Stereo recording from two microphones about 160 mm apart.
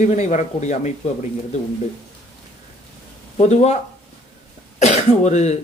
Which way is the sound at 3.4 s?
45° left (ahead or behind).